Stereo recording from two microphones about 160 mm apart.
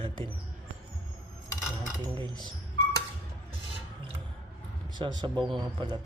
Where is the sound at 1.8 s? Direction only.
25° right (ahead or behind).